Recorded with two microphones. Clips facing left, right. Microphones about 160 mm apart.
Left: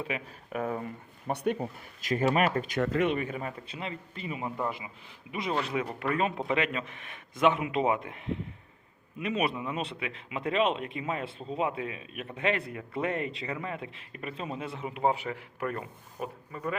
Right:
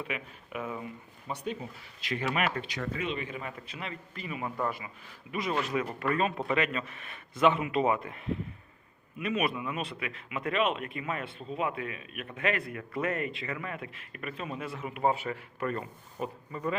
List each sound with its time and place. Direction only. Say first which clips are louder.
0.0 s speech: left 2 dB; 35° left (ahead or behind)
1.3 s speech: left 6 dB; 60° left (ahead or behind)
2.0 s speech: left 5 dB; 45° left (ahead or behind)
2.8 s speech: left 7 dB; 75° left (ahead or behind)
3.2 s a man's voice: left 4 dB; 40° left (ahead or behind)
3.7 s a man's voice: left 2 dB; 30° left (ahead or behind)
5.7 s a man's voice: even; 10° left (ahead or behind)